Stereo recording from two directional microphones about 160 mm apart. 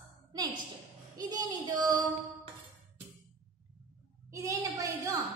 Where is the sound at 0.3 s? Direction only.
25° right (ahead or behind).